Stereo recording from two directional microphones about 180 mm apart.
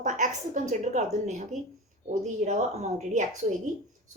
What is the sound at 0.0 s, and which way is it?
A woman's voice, 45° right (ahead or behind).